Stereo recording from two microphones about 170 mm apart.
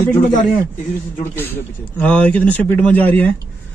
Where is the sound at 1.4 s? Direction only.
10° left (ahead or behind).